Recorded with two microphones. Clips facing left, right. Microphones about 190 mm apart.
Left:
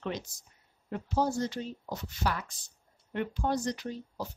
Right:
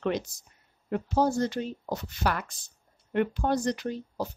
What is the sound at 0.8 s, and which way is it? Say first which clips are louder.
Speech: right 4 dB; 60° right (ahead or behind).